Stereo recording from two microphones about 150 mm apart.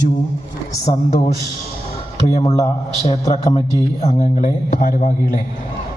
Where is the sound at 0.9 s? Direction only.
55° left (ahead or behind).